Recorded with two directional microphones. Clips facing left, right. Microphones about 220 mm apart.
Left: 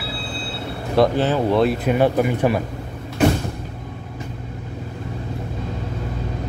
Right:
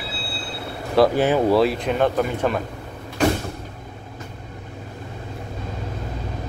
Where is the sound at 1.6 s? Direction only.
Centre (ahead or behind).